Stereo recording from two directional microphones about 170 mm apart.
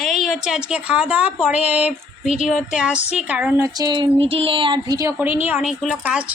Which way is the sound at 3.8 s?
25° right (ahead or behind).